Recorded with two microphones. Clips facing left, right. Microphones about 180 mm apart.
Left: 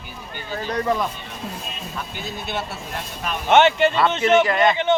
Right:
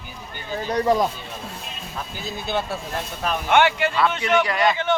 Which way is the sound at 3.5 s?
25° left (ahead or behind).